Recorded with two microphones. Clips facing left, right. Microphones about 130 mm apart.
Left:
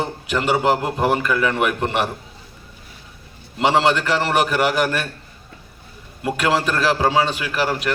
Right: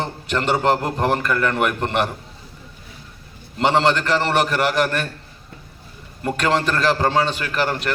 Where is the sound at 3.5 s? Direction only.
5° left (ahead or behind).